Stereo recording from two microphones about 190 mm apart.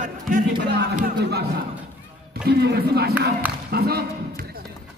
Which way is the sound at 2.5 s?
55° right (ahead or behind).